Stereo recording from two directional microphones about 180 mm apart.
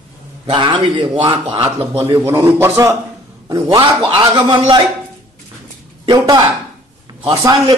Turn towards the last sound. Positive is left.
turn(degrees=-20)  # may be behind; listen again after turning